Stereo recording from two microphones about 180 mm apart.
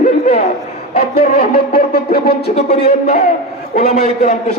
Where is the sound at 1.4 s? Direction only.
60° left (ahead or behind).